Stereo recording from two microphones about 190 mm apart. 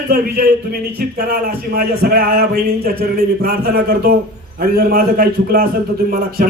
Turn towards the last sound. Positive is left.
turn(degrees=-50)  # may be behind; listen again after turning